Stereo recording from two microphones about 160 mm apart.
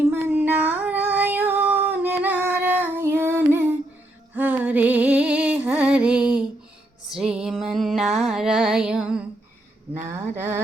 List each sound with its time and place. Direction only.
0.1 s female singing: 10° right (ahead or behind)
4.4 s music: 10° right (ahead or behind)
9.9 s a sound: 15° right (ahead or behind)